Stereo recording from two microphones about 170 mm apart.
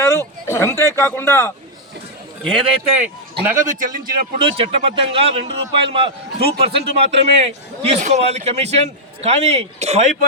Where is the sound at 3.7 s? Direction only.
50° right (ahead or behind).